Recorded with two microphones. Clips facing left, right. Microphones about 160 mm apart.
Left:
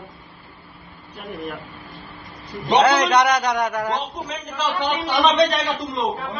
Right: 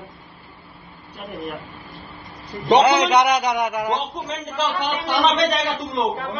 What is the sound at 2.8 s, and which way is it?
A man's voice, 15° right (ahead or behind).